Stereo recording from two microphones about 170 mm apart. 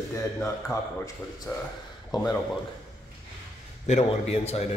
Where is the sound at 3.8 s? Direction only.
40° left (ahead or behind).